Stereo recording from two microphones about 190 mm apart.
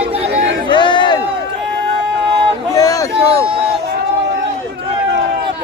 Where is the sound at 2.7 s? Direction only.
15° left (ahead or behind).